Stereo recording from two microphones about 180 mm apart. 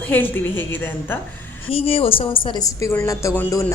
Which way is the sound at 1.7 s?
30° left (ahead or behind).